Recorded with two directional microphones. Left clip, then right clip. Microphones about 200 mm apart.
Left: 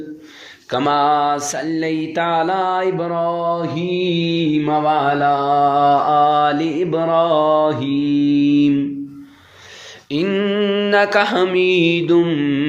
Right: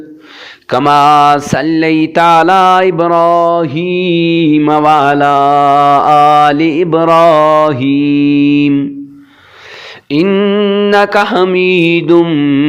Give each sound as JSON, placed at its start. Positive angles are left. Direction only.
{"t": 0.7, "sound": "mantra", "side_deg": -35}
{"t": 10.1, "sound": "mantra", "side_deg": -30}